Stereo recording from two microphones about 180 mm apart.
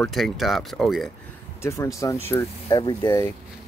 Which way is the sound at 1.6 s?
15° left (ahead or behind).